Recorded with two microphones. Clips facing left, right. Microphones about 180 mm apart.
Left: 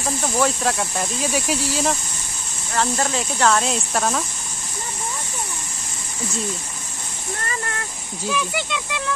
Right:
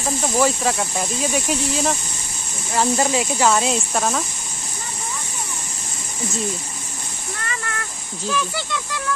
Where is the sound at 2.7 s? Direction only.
10° right (ahead or behind).